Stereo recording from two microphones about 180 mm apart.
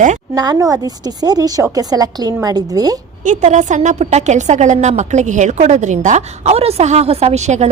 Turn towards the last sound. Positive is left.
turn(degrees=-40)  # may be behind; listen again after turning